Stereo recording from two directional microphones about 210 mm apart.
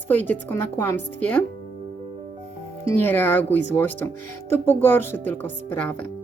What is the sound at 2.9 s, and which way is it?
Speech, 10° left (ahead or behind).